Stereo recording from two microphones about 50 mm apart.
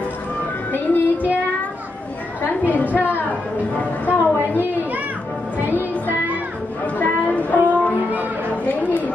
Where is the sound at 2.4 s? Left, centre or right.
Left.